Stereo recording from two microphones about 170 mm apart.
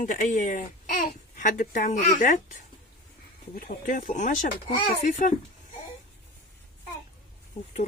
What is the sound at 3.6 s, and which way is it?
Speech, 55° left (ahead or behind).